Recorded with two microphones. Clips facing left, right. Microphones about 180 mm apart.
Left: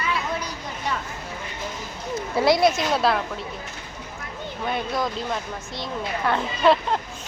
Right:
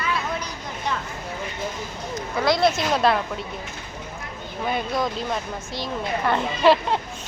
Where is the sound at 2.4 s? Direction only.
20° left (ahead or behind).